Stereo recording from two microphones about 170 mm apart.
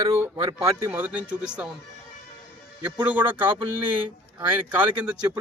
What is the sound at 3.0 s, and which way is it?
Speech, 10° right (ahead or behind).